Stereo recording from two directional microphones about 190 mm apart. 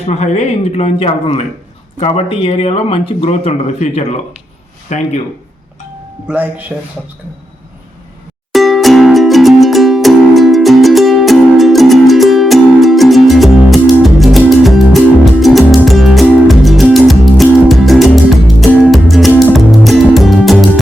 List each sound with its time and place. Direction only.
0.0 s speech: 35° left (ahead or behind)
6.2 s speech: 10° right (ahead or behind)
8.5 s music: centre (ahead or behind)